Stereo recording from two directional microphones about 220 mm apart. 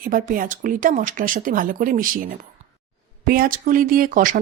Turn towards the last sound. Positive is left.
turn(degrees=-35)  # may be behind; listen again after turning